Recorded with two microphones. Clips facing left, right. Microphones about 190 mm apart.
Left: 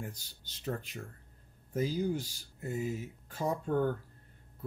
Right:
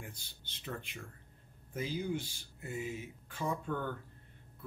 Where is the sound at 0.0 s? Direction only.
40° left (ahead or behind).